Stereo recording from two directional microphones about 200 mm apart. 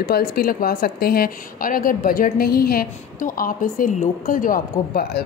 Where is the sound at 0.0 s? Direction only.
50° left (ahead or behind).